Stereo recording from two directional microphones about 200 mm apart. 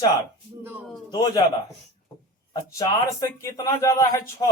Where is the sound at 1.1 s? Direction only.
20° left (ahead or behind).